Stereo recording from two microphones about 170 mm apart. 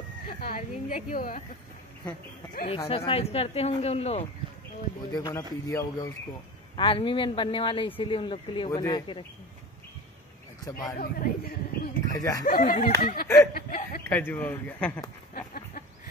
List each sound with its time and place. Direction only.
0.4 s a woman's voice: 40° left (ahead or behind)
3.1 s speech: 35° left (ahead or behind)
5.1 s speech: 20° left (ahead or behind)
6.8 s speech: 30° left (ahead or behind)
10.6 s a man's voice: 20° left (ahead or behind)
11.0 s speech: 60° left (ahead or behind)
12.1 s speech: 20° left (ahead or behind)
12.4 s speech: 55° left (ahead or behind)
14.0 s speech: 10° left (ahead or behind)
15.3 s chicken: 55° left (ahead or behind)